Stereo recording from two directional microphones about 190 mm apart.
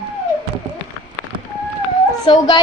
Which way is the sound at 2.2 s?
25° left (ahead or behind).